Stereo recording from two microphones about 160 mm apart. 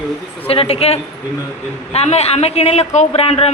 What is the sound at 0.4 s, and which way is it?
A man's voice, 35° left (ahead or behind).